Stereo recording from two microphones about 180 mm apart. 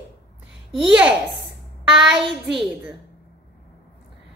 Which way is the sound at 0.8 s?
5° right (ahead or behind).